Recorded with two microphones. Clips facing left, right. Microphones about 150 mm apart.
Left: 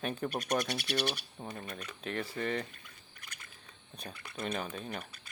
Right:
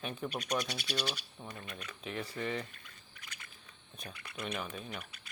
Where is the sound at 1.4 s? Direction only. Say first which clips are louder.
Left 4 dB; 40° left (ahead or behind).